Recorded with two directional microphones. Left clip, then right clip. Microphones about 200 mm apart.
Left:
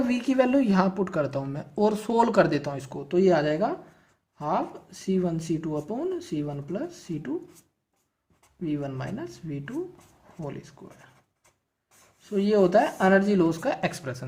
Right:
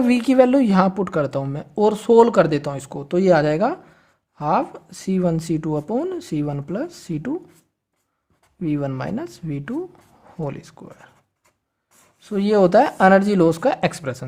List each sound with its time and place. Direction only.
0.0 s speech: 45° right (ahead or behind)
8.6 s speech: 45° right (ahead or behind)
12.2 s speech: 45° right (ahead or behind)